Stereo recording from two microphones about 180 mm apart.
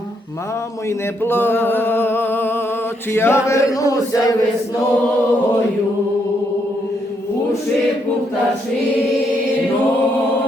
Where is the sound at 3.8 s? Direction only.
20° left (ahead or behind).